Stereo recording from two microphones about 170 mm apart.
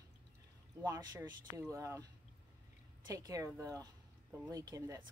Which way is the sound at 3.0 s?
20° right (ahead or behind).